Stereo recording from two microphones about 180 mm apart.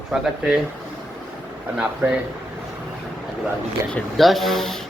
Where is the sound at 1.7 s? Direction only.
10° right (ahead or behind).